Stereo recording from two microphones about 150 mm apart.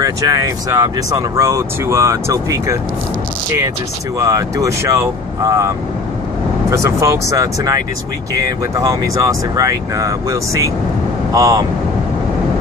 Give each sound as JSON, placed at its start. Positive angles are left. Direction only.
{"t": 0.0, "sound": "speech", "side_deg": -25}
{"t": 4.2, "sound": "speech", "side_deg": -20}
{"t": 6.7, "sound": "speech", "side_deg": -20}